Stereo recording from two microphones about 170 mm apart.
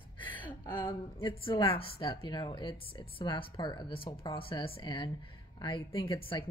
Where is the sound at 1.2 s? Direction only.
30° left (ahead or behind).